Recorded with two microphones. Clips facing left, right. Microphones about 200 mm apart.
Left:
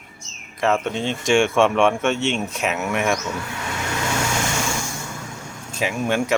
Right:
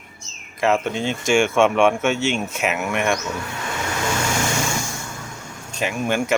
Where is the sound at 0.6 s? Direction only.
Centre (ahead or behind).